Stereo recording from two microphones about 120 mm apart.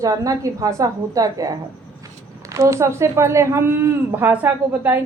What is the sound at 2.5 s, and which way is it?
A woman's voice, 25° right (ahead or behind).